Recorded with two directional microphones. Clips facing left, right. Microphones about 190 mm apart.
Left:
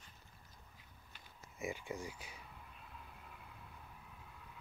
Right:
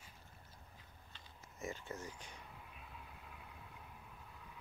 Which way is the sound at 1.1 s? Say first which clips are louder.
Left 2 dB; 10° left (ahead or behind).